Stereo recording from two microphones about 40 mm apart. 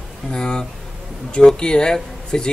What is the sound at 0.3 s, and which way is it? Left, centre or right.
A man's voice, centre.